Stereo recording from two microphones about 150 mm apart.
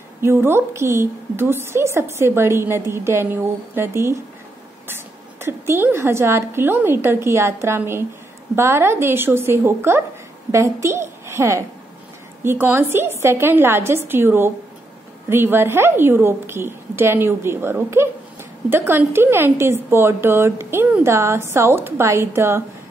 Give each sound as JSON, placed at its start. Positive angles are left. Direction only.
{"t": 0.2, "sound": "a woman's voice", "side_deg": -15}